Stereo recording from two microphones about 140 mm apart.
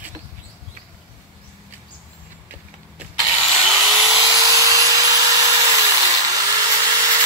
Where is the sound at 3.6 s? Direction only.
10° right (ahead or behind).